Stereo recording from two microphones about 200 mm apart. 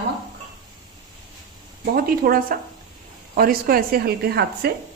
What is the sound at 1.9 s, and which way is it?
A woman's voice, 45° right (ahead or behind).